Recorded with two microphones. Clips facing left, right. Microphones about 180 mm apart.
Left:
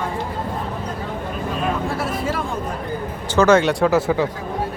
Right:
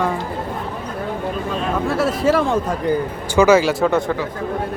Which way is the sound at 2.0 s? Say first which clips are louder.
Right 7 dB; 85° right.